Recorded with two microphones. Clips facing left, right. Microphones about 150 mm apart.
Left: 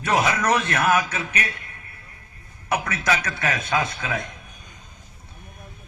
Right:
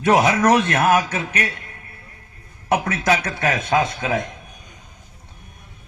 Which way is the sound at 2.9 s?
25° right (ahead or behind).